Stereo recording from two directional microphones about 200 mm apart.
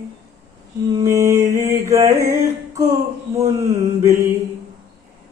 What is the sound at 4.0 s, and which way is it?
Mantra, 15° right (ahead or behind).